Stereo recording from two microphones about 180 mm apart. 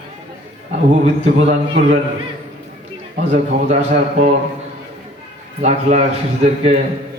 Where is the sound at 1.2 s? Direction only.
35° right (ahead or behind).